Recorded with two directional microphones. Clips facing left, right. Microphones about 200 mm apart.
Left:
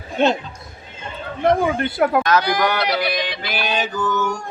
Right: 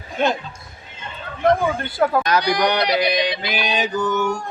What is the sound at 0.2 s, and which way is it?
Speech, 25° left (ahead or behind).